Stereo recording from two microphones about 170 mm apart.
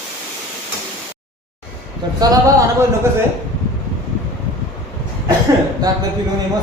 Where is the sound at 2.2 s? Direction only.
25° right (ahead or behind).